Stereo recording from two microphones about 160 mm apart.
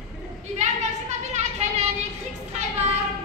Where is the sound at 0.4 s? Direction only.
45° right (ahead or behind).